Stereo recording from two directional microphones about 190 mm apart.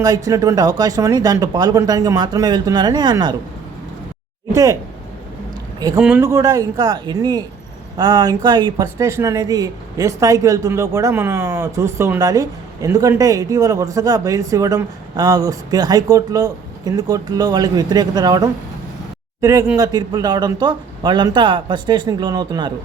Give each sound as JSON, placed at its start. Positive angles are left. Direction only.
{"t": 0.0, "sound": "speech", "side_deg": -20}
{"t": 4.5, "sound": "speech", "side_deg": -15}
{"t": 6.0, "sound": "speech", "side_deg": -5}
{"t": 6.2, "sound": "speech", "side_deg": -15}